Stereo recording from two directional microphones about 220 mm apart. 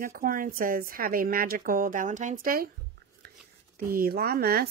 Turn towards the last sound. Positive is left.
turn(degrees=-45)  # may be behind; listen again after turning